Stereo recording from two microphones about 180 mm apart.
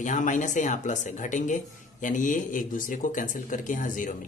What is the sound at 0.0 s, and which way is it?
Speech, 45° left (ahead or behind).